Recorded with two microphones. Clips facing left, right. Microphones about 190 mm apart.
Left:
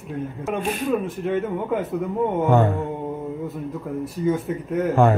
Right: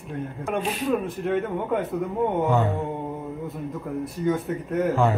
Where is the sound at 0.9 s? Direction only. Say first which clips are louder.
Even; centre (ahead or behind).